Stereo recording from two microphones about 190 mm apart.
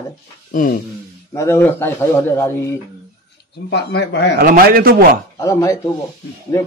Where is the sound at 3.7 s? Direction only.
65° left (ahead or behind).